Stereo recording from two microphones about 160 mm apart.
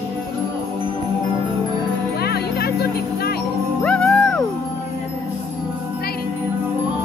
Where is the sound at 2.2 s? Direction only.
80° left.